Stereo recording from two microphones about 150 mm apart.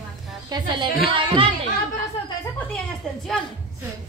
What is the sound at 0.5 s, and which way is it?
A woman's voice, 35° right (ahead or behind).